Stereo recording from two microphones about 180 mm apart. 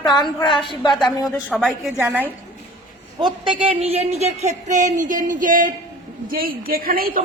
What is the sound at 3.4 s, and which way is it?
A woman's voice, 25° right (ahead or behind).